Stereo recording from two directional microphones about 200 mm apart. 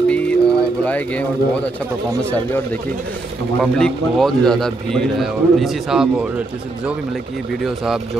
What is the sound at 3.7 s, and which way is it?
A man's voice, centre (ahead or behind).